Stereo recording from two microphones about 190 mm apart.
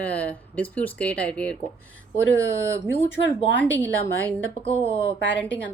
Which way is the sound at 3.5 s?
10° left (ahead or behind).